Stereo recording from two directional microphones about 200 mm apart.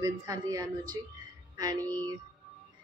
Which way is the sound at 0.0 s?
15° right (ahead or behind).